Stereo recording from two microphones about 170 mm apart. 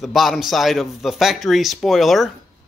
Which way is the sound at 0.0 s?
Centre (ahead or behind).